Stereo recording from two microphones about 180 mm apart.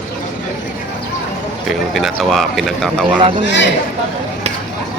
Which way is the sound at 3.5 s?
85° left.